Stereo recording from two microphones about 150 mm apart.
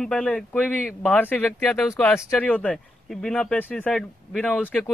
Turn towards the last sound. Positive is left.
turn(degrees=10)  # may be behind; listen again after turning